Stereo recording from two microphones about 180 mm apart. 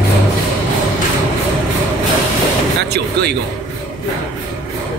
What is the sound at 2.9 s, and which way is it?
Speech, 65° right (ahead or behind).